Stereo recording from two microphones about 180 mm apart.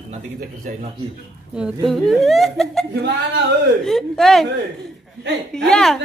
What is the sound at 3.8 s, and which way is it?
Speech, centre (ahead or behind).